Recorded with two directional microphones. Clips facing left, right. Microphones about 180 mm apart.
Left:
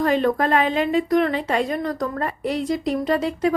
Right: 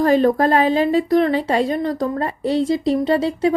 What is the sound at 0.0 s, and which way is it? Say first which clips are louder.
A woman's voice: right 5 dB; 35° right (ahead or behind).